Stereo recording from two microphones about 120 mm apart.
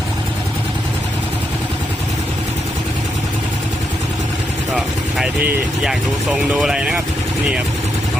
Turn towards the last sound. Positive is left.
turn(degrees=-5)  # may be behind; listen again after turning